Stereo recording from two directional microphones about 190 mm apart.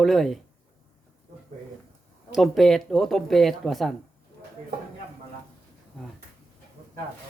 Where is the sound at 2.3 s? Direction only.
Centre (ahead or behind).